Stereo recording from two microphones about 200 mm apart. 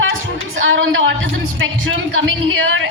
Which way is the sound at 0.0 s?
75° right (ahead or behind).